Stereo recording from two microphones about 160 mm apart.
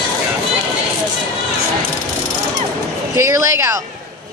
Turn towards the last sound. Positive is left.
turn(degrees=-15)  # may be behind; listen again after turning